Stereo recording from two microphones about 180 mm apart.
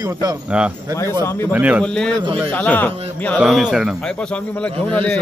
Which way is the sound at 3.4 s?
5° right (ahead or behind).